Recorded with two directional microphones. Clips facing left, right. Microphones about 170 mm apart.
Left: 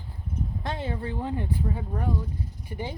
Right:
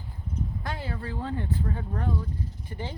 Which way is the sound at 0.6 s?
25° left (ahead or behind).